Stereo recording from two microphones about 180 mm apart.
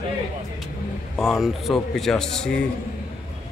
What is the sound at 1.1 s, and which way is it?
Speech, centre (ahead or behind).